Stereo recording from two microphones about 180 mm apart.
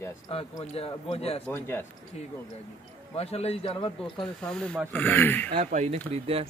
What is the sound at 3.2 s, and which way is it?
Speech, 35° left (ahead or behind).